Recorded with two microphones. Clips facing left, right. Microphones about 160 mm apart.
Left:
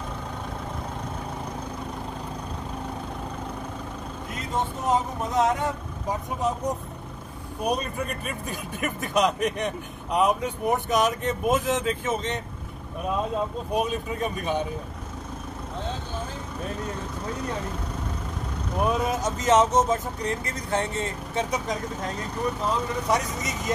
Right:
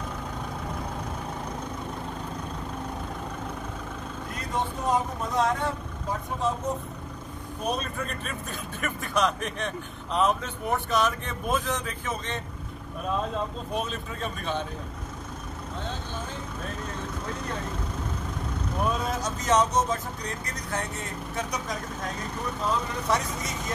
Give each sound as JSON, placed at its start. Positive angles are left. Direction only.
{"t": 4.8, "sound": "speech", "side_deg": 20}
{"t": 7.6, "sound": "speech", "side_deg": 10}
{"t": 13.7, "sound": "speech", "side_deg": 15}
{"t": 18.9, "sound": "speech", "side_deg": 20}
{"t": 23.0, "sound": "speech", "side_deg": 15}